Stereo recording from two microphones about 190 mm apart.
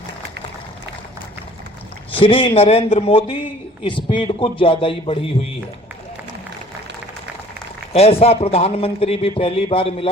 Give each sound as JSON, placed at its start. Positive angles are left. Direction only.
{"t": 2.1, "sound": "a man's voice", "side_deg": 30}
{"t": 7.9, "sound": "a man's voice", "side_deg": 30}